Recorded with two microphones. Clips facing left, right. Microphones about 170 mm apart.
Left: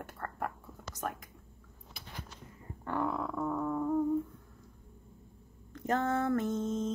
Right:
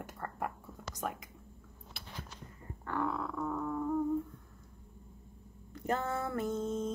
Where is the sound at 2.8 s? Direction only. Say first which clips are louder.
Left 2 dB; 20° left (ahead or behind).